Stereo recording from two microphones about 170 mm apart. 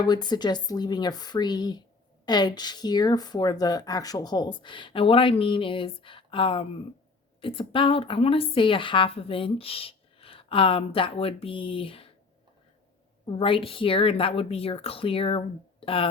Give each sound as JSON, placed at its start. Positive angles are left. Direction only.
{"t": 0.0, "sound": "a woman's voice", "side_deg": 25}
{"t": 13.2, "sound": "a woman's voice", "side_deg": 30}